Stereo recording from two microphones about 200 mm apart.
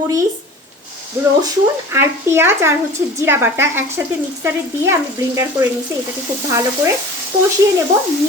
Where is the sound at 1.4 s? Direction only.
10° right (ahead or behind).